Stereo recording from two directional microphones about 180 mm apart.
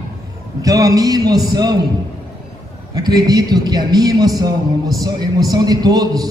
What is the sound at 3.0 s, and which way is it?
A man's voice, 20° right (ahead or behind).